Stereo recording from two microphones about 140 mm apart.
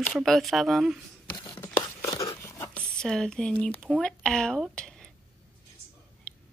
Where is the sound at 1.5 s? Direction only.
15° left (ahead or behind).